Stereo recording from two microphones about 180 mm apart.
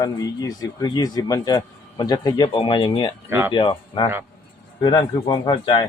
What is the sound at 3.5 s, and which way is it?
Speech, 25° left (ahead or behind).